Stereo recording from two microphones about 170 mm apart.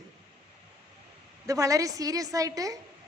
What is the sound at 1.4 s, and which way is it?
A woman's voice, 20° right (ahead or behind).